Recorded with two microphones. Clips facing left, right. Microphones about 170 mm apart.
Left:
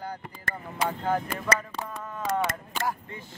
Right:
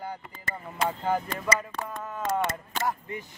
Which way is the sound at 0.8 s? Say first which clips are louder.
Even; 5° right (ahead or behind).